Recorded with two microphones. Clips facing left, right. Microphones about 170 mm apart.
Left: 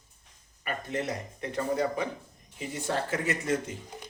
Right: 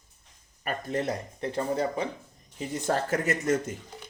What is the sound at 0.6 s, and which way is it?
Speech, 35° right (ahead or behind).